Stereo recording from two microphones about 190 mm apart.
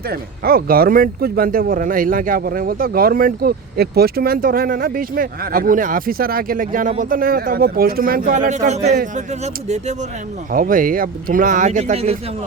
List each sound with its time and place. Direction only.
0.1 s speech: 50° right (ahead or behind); by 10.1 s 35° right (ahead or behind)
10.5 s speech: 45° right (ahead or behind)